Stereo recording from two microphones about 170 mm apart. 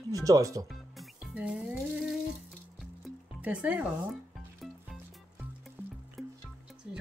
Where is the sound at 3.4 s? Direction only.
10° right (ahead or behind).